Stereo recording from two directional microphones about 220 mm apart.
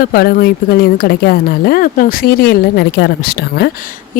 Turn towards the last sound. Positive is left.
turn(degrees=45)  # may be behind; listen again after turning